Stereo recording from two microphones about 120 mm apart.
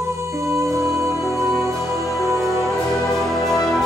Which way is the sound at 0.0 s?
25° right (ahead or behind).